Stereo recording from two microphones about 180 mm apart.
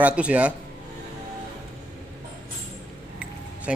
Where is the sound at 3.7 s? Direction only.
5° right (ahead or behind).